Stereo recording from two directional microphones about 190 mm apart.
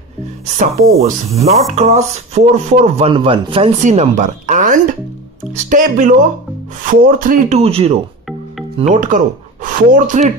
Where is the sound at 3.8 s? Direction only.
40° right (ahead or behind).